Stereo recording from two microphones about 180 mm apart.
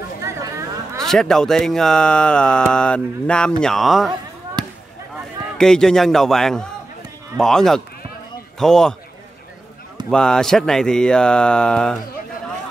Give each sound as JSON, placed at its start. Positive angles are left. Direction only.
{"t": 0.2, "sound": "chatter", "side_deg": -15}
{"t": 0.9, "sound": "speech", "side_deg": 0}
{"t": 4.6, "sound": "basketball bounce", "side_deg": -25}
{"t": 5.6, "sound": "speech", "side_deg": 5}
{"t": 10.0, "sound": "speech", "side_deg": 5}